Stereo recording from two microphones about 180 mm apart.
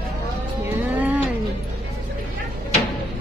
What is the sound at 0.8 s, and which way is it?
Cat, 10° right (ahead or behind).